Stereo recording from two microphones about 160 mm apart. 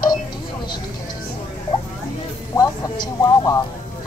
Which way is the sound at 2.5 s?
20° left (ahead or behind).